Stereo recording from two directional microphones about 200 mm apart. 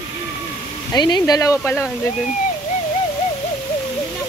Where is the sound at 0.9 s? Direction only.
20° left (ahead or behind).